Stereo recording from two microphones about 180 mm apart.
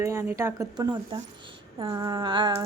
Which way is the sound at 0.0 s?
15° right (ahead or behind).